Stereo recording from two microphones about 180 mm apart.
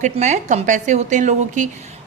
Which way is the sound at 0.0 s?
40° right (ahead or behind).